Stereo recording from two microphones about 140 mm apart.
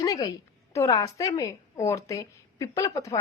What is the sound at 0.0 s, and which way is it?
A woman's voice, 25° left (ahead or behind).